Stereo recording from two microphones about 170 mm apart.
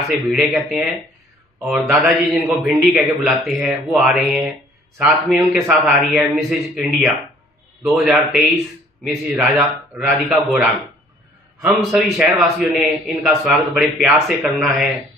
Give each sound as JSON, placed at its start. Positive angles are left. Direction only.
{"t": 0.1, "sound": "a man's voice", "side_deg": 0}
{"t": 11.6, "sound": "a man's voice", "side_deg": 0}